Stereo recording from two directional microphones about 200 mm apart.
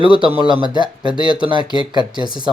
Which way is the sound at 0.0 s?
25° right (ahead or behind).